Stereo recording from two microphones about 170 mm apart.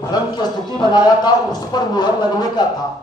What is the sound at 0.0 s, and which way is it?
A man's voice, 25° left (ahead or behind).